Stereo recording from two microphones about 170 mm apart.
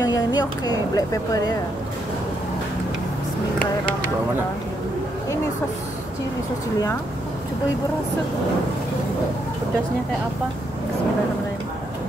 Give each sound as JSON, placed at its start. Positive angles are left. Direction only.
{"t": 0.0, "sound": "speech", "side_deg": 20}